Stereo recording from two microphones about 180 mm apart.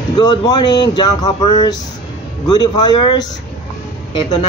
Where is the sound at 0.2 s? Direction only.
25° left (ahead or behind).